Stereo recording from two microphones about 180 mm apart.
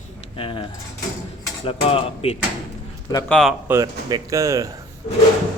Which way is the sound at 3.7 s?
15° right (ahead or behind).